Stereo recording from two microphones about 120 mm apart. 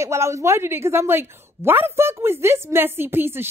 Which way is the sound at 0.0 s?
25° right (ahead or behind).